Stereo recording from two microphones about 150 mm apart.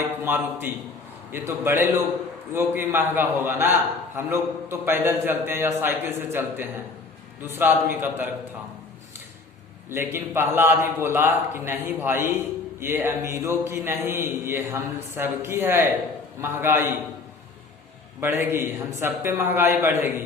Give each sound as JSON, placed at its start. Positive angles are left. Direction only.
{"t": 0.3, "sound": "a man's voice", "side_deg": -15}
{"t": 9.9, "sound": "a man's voice", "side_deg": -15}
{"t": 18.2, "sound": "a man's voice", "side_deg": -15}